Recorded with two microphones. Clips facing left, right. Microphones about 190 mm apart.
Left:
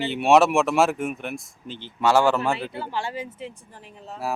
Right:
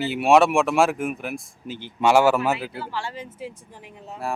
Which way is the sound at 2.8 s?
20° left (ahead or behind).